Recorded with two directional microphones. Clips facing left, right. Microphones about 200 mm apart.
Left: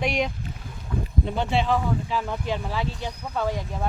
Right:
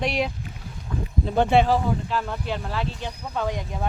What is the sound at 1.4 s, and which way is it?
Speech, 55° right (ahead or behind).